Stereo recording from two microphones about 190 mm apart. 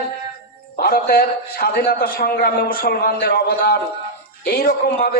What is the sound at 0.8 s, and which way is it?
A man's voice, 50° left (ahead or behind).